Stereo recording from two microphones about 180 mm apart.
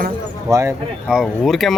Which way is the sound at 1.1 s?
Centre (ahead or behind).